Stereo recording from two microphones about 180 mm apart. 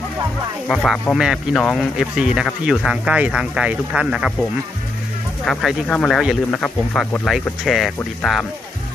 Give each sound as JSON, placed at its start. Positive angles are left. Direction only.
{"t": 0.7, "sound": "speech", "side_deg": 0}